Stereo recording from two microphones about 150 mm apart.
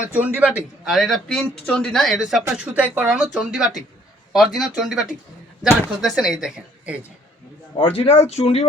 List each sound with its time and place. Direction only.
0.1 s a man's voice: 10° right (ahead or behind)
2.4 s a man's voice: 15° right (ahead or behind)
7.9 s speech: 40° left (ahead or behind)